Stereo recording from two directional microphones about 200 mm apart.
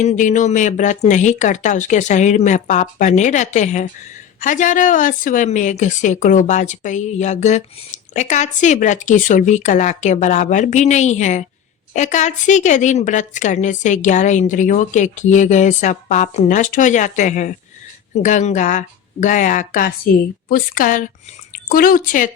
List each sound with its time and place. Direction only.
0.0 s a woman's voice: 35° left (ahead or behind)